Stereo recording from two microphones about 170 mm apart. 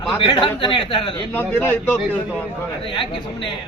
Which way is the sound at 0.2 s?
30° left (ahead or behind).